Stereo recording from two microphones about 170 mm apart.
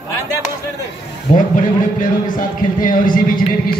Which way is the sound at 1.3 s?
50° left (ahead or behind).